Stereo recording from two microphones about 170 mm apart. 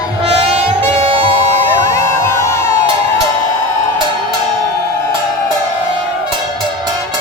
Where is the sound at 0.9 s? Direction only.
35° right (ahead or behind).